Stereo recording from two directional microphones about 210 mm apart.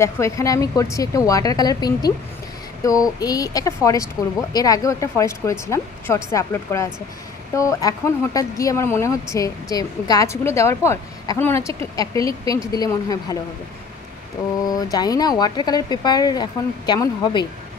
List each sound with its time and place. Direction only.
0.0 s speech: 15° left (ahead or behind)
14.7 s speech: 20° left (ahead or behind)